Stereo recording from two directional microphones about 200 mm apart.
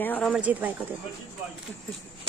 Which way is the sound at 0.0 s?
10° left (ahead or behind).